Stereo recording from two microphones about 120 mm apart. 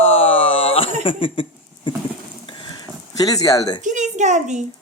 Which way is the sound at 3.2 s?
30° left (ahead or behind).